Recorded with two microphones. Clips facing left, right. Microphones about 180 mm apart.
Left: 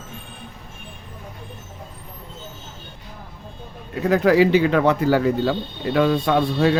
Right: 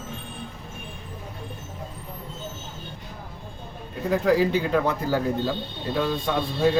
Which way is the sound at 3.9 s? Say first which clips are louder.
Left 5 dB; 80° left.